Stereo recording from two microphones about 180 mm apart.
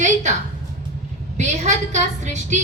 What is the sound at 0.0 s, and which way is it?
Speech, 40° right (ahead or behind).